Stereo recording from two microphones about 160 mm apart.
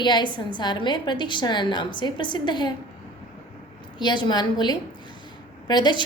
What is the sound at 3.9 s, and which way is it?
A woman's voice, 30° left (ahead or behind).